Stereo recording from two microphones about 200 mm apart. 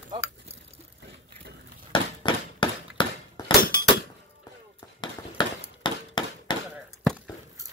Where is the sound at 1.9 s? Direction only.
25° left (ahead or behind).